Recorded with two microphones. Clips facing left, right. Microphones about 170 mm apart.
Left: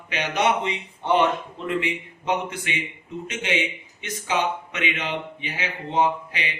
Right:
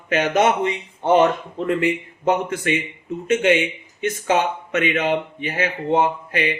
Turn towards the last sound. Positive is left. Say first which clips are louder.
# right 4 dB
turn(degrees=-50)  # may be behind; listen again after turning